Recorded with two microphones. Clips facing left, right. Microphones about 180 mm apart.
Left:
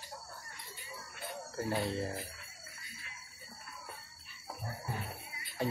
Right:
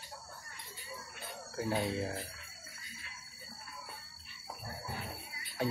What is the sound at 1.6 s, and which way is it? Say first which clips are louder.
Speech: right 1 dB; 5° right (ahead or behind).